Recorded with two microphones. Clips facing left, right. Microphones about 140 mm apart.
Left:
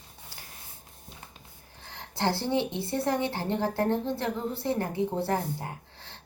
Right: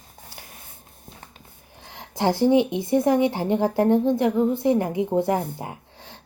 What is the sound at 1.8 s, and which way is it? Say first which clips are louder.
Speech: right 6 dB; 15° right (ahead or behind).